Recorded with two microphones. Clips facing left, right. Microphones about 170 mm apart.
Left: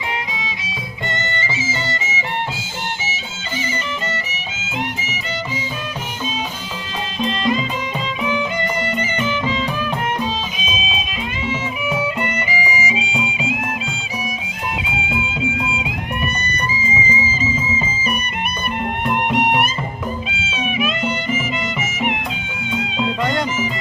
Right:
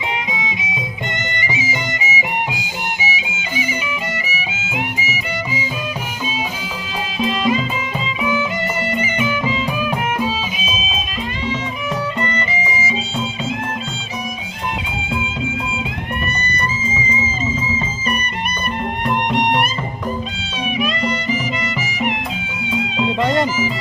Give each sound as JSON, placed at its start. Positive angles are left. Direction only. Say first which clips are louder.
{"t": 0.3, "sound": "music", "louder": "right 4 dB", "side_deg": -20}
{"t": 7.2, "sound": "music", "louder": "right 2 dB", "side_deg": -5}
{"t": 10.6, "sound": "music", "louder": "even", "side_deg": 0}
{"t": 12.2, "sound": "music", "louder": "even", "side_deg": 10}
{"t": 16.8, "sound": "music", "louder": "left 1 dB", "side_deg": 10}
{"t": 19.0, "sound": "music", "louder": "even", "side_deg": 5}